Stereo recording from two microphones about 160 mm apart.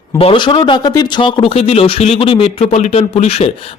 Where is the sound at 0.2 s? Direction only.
30° left (ahead or behind).